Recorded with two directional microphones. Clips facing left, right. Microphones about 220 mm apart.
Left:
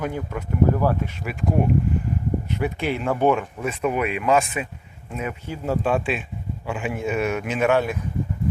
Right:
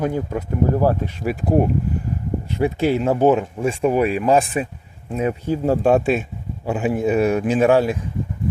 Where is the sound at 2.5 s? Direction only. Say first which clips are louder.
Right 10 dB; 30° right (ahead or behind).